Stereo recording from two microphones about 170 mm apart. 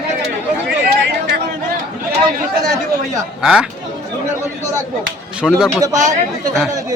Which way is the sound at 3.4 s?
5° right (ahead or behind).